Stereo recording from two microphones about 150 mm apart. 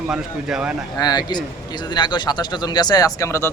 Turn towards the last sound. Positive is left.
turn(degrees=20)  # may be behind; listen again after turning